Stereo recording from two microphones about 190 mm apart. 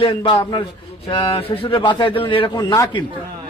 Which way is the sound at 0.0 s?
25° left (ahead or behind).